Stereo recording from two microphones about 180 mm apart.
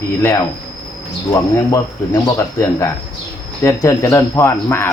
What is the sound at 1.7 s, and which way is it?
Speech, 20° left (ahead or behind).